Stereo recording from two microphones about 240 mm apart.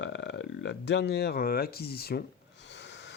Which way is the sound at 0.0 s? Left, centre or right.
Left.